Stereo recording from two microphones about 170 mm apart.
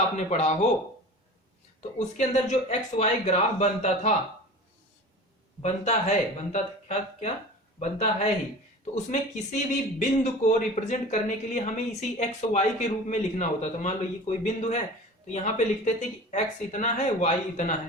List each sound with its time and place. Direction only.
0.2 s speech: 40° left (ahead or behind)
2.1 s speech: 45° left (ahead or behind)
5.6 s a woman's voice: 40° left (ahead or behind)